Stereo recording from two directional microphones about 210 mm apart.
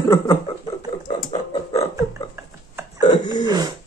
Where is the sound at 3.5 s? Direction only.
20° right (ahead or behind).